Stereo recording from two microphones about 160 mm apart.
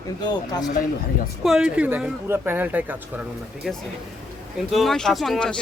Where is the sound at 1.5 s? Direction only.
5° right (ahead or behind).